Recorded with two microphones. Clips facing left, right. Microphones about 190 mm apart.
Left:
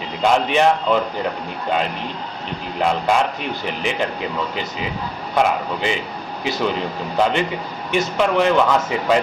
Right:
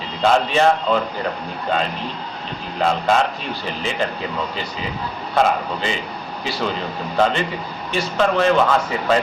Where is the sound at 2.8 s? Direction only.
15° left (ahead or behind).